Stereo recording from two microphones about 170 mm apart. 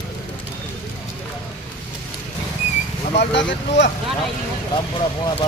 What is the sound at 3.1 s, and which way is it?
Speech, 90° left.